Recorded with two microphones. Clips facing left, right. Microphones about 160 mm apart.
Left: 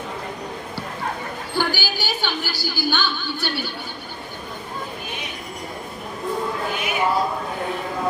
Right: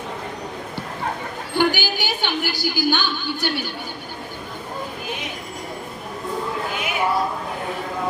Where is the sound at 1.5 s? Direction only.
20° right (ahead or behind).